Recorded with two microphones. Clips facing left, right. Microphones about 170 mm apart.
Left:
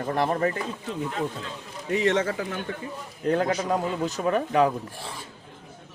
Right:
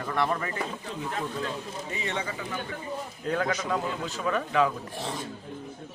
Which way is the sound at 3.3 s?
35° left (ahead or behind).